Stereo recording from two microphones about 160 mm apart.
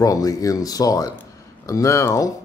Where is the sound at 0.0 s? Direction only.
20° left (ahead or behind).